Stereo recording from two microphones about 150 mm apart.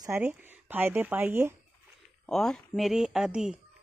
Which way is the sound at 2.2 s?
5° left (ahead or behind).